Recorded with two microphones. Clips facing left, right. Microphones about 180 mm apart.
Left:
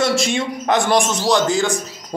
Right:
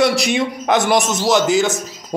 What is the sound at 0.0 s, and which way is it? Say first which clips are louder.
A man's voice: right 2 dB; 15° right (ahead or behind).